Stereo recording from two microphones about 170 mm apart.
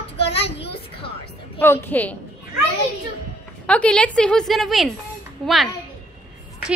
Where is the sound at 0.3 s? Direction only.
35° left (ahead or behind).